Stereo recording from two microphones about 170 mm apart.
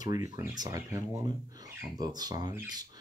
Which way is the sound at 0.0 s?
20° right (ahead or behind).